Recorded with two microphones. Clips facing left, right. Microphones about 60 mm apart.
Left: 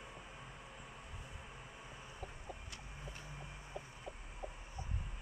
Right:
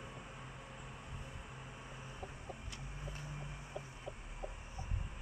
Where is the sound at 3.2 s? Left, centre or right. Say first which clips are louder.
Right 3 dB; centre.